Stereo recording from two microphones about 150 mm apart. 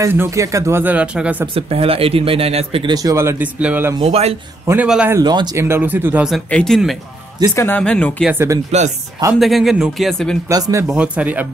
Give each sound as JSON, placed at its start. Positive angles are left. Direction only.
{"t": 0.0, "sound": "speech", "side_deg": -15}
{"t": 1.5, "sound": "speech", "side_deg": -40}
{"t": 2.9, "sound": "speech", "side_deg": -25}
{"t": 4.0, "sound": "speech", "side_deg": -45}
{"t": 4.6, "sound": "speech", "side_deg": -10}
{"t": 5.1, "sound": "speech", "side_deg": -30}
{"t": 6.2, "sound": "speech", "side_deg": 0}
{"t": 7.5, "sound": "speech", "side_deg": 15}
{"t": 8.3, "sound": "speech", "side_deg": -15}
{"t": 9.4, "sound": "speech", "side_deg": 0}
{"t": 10.5, "sound": "speech", "side_deg": -20}